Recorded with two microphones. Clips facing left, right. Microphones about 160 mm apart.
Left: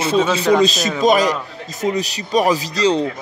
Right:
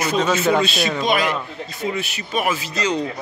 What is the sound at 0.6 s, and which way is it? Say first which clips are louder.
Speech: left 5 dB; 40° left (ahead or behind).